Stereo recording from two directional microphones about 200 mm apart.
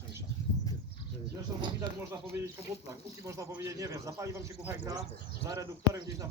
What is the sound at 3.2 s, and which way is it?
Speech, 15° right (ahead or behind).